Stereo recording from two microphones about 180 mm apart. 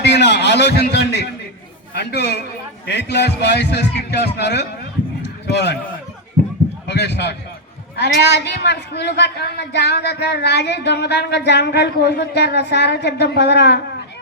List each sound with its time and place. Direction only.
0.0 s a man's voice: 70° left (ahead or behind)
5.2 s a sound: 70° left (ahead or behind)
6.8 s a man's voice: 70° left (ahead or behind)